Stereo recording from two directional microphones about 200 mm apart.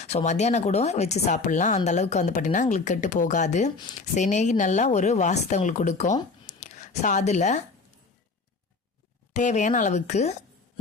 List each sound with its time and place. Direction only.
0.0 s speech: 35° left (ahead or behind)
6.4 s a sound: 35° left (ahead or behind)
9.3 s speech: 35° left (ahead or behind)